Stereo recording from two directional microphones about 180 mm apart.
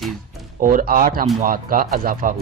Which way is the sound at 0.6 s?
50° right (ahead or behind).